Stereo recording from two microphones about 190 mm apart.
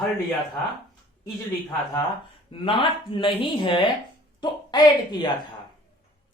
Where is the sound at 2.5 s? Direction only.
25° left (ahead or behind).